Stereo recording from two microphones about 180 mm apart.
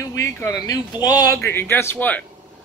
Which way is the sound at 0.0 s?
15° left (ahead or behind).